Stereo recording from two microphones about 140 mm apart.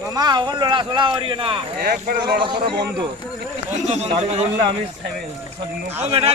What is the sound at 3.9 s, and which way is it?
Speech, 50° right (ahead or behind).